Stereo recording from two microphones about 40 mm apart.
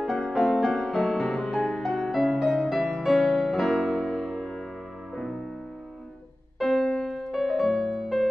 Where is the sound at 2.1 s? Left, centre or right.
Centre.